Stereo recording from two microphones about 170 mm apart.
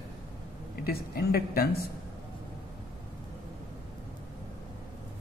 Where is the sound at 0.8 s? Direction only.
65° left (ahead or behind).